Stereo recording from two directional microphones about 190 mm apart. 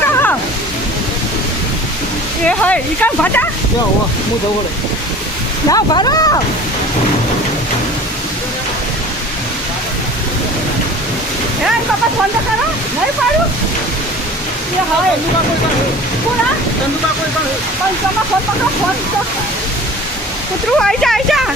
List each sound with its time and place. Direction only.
2.5 s speech: 5° left (ahead or behind)
5.6 s speech: 20° left (ahead or behind)
20.7 s speech: centre (ahead or behind)